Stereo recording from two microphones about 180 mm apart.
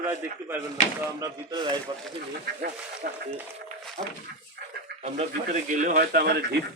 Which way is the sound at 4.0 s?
35° right (ahead or behind).